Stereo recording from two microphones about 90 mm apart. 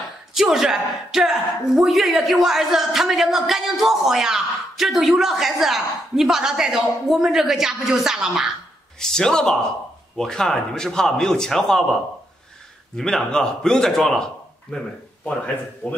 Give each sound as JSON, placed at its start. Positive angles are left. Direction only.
{"t": 0.3, "sound": "speech", "side_deg": -5}
{"t": 9.0, "sound": "speech", "side_deg": 5}
{"t": 12.9, "sound": "speech", "side_deg": 5}
{"t": 15.2, "sound": "speech", "side_deg": 15}